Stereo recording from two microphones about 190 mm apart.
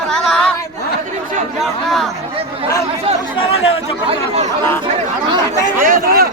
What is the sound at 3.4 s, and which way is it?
Speech, 30° left (ahead or behind).